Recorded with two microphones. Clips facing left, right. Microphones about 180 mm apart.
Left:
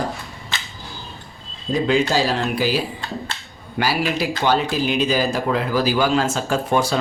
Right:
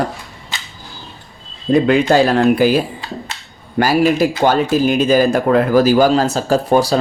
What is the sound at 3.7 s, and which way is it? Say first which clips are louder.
Speech: right 8 dB; 45° right (ahead or behind).